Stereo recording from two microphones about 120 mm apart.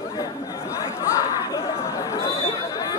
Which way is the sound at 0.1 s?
30° left (ahead or behind).